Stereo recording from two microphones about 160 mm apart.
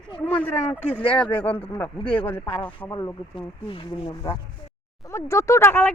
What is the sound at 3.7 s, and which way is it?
Speech, 30° left (ahead or behind).